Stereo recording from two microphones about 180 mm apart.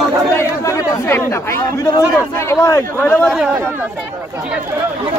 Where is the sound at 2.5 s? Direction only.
15° left (ahead or behind).